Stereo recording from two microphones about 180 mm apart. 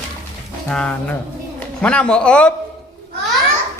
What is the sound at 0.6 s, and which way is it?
A man's voice, 5° left (ahead or behind).